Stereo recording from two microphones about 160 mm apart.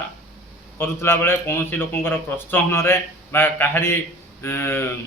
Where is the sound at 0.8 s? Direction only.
15° left (ahead or behind).